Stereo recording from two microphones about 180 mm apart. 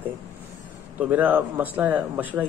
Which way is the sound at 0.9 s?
10° right (ahead or behind).